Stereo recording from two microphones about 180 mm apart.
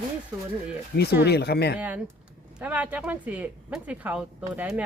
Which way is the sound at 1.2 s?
65° left (ahead or behind).